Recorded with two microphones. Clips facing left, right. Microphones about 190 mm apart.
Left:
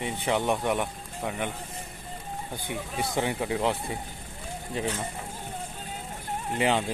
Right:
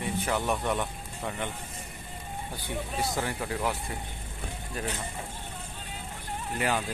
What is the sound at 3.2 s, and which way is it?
Speech, 15° left (ahead or behind).